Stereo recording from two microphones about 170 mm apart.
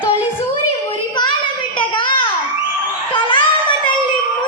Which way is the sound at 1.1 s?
25° left (ahead or behind).